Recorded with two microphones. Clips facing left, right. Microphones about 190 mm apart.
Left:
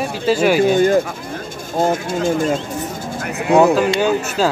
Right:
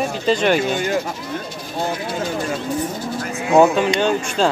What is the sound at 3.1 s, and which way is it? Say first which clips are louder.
Bird: left 2 dB; 60° left (ahead or behind).